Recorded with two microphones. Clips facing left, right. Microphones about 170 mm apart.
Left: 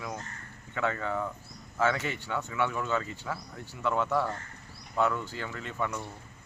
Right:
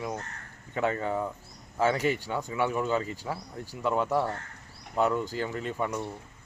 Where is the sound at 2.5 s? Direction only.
35° right (ahead or behind).